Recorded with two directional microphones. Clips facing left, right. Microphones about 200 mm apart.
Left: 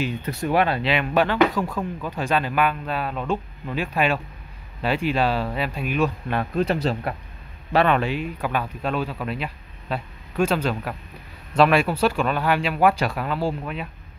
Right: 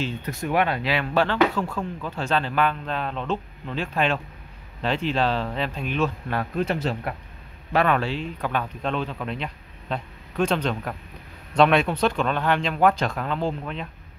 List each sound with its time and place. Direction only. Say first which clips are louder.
0.2 s speech: left 2 dB; 35° left (ahead or behind)
0.9 s speech: left 2 dB; 15° left (ahead or behind)
6.5 s speech: left 3 dB; 35° left (ahead or behind)
7.7 s speech: left 2 dB; 25° left (ahead or behind); by 13.8 s 5° left (ahead or behind)